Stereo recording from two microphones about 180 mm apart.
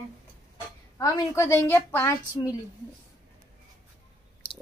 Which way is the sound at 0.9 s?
15° left (ahead or behind).